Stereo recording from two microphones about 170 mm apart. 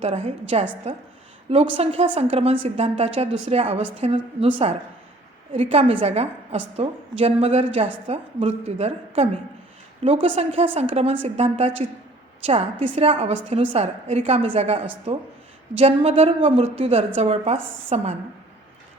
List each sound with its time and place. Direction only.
0.0 s a woman's voice: 40° right (ahead or behind)
13.0 s a woman's voice: 35° right (ahead or behind)